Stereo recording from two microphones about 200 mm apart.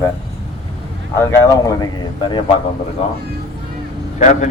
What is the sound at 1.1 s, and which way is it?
Speech, 15° left (ahead or behind).